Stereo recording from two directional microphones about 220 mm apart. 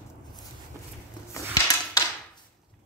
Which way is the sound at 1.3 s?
15° left (ahead or behind).